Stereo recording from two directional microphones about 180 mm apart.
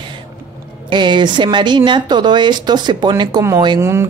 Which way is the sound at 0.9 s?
25° right (ahead or behind).